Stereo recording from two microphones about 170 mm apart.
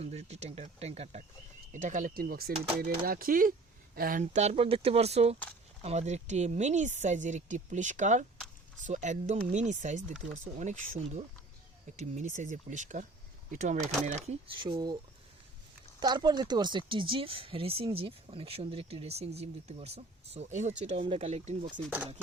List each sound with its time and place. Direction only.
0.0 s speech: 40° right (ahead or behind)
10.1 s speech: centre (ahead or behind)
10.3 s speech: 45° right (ahead or behind); by 14.9 s 25° right (ahead or behind)
16.0 s speech: 25° right (ahead or behind); by 21.8 s 40° right (ahead or behind)